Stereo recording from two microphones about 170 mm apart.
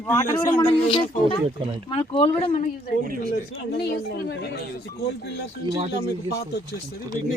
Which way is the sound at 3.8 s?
70° left (ahead or behind).